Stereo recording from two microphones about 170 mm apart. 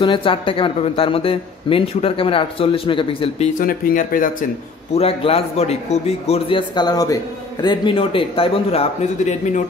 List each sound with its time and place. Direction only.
0.0 s speech: 30° left (ahead or behind)
3.5 s speech: 50° left (ahead or behind)
4.9 s speech: 35° left (ahead or behind)